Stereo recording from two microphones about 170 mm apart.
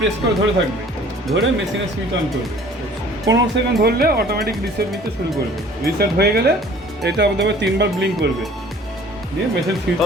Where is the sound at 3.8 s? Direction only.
65° right (ahead or behind).